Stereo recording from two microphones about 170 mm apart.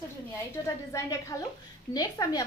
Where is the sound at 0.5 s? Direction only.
20° left (ahead or behind).